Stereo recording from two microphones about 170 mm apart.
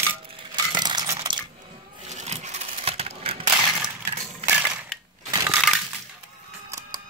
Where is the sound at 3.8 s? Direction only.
10° right (ahead or behind).